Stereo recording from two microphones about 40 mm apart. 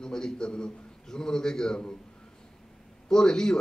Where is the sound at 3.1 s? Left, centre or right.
Centre.